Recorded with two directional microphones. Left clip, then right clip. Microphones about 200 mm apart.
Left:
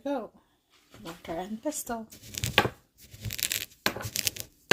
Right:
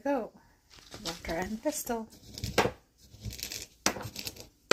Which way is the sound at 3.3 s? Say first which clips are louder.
Left 8 dB; 35° left (ahead or behind).